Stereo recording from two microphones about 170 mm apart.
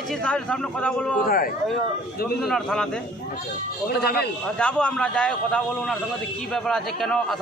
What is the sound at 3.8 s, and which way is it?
Speech, 65° left (ahead or behind).